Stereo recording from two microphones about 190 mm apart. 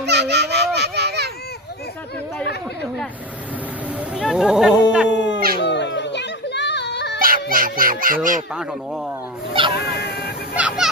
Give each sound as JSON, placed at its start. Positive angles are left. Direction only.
{"t": 0.0, "sound": "children playing", "side_deg": -60}
{"t": 4.1, "sound": "speech", "side_deg": -5}
{"t": 5.0, "sound": "dog", "side_deg": 70}
{"t": 5.5, "sound": "children playing", "side_deg": 65}
{"t": 7.2, "sound": "a sound", "side_deg": -50}
{"t": 7.5, "sound": "speech", "side_deg": -50}
{"t": 8.5, "sound": "speech", "side_deg": -5}
{"t": 9.7, "sound": "cat", "side_deg": 60}
{"t": 10.5, "sound": "speech", "side_deg": -5}